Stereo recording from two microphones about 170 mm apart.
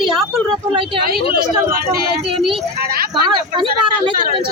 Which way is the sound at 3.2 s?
30° right (ahead or behind).